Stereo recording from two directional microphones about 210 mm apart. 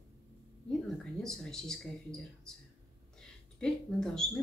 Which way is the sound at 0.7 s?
Centre (ahead or behind).